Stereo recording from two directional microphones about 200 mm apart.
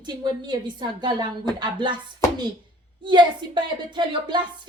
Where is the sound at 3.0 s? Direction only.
25° right (ahead or behind).